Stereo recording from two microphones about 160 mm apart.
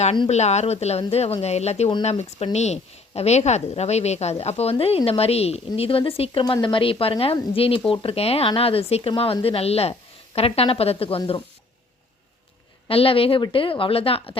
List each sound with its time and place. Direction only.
0.0 s a woman's voice: 40° left (ahead or behind)
12.9 s a woman's voice: 35° left (ahead or behind)